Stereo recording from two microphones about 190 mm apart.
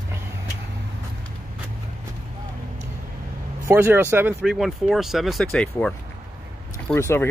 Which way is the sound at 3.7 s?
10° right (ahead or behind).